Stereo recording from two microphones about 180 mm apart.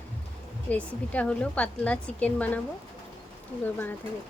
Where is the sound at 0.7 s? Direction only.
5° left (ahead or behind).